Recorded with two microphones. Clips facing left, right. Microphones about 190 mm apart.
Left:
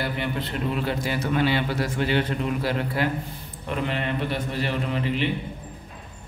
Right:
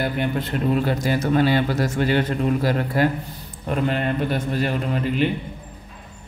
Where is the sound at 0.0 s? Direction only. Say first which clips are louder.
Right 4 dB; 45° right (ahead or behind).